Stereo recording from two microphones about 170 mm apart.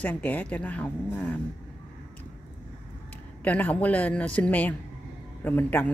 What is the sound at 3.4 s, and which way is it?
Speech, 10° left (ahead or behind).